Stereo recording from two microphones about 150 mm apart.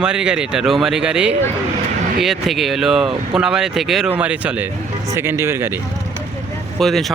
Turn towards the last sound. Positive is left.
turn(degrees=0)  # may be behind; listen again after turning